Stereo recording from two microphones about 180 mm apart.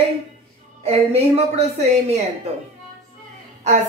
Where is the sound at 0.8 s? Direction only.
35° right (ahead or behind).